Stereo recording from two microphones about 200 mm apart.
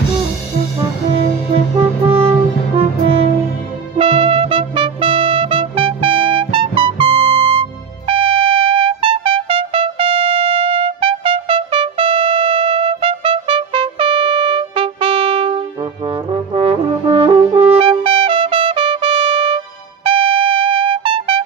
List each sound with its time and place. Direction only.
2.0 s music: 25° right (ahead or behind)
4.0 s music: 25° right (ahead or behind)
8.1 s trumpet: 25° right (ahead or behind)
16.1 s brass instrument: 30° right (ahead or behind)
20.1 s trumpet: 25° right (ahead or behind)